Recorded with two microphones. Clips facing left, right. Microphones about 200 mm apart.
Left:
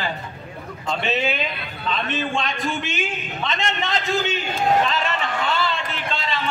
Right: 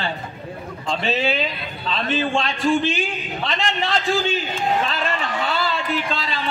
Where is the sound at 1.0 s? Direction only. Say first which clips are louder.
Right 2 dB; 35° right (ahead or behind).